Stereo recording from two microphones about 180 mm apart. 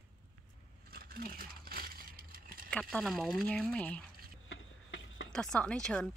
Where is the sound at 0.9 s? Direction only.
55° right (ahead or behind).